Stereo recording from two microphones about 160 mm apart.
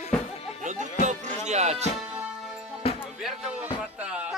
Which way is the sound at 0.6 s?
50° right (ahead or behind).